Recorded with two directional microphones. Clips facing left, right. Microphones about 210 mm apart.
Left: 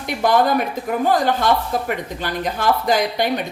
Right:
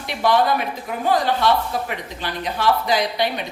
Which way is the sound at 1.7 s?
45° left (ahead or behind).